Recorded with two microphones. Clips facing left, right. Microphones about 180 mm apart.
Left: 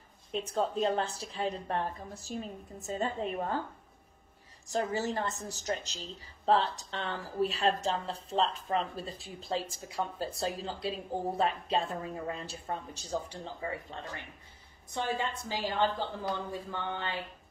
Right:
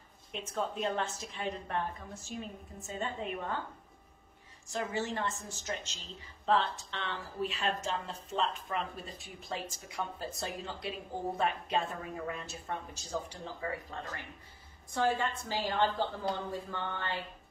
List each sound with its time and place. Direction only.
0.3 s a woman's voice: 35° left (ahead or behind)
4.6 s a woman's voice: 40° left (ahead or behind); by 17.2 s 15° left (ahead or behind)